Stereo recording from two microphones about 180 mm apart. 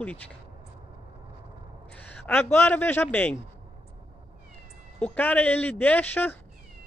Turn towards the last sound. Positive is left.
turn(degrees=10)  # may be behind; listen again after turning